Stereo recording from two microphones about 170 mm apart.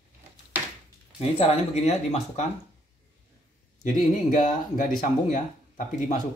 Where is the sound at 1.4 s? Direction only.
35° left (ahead or behind).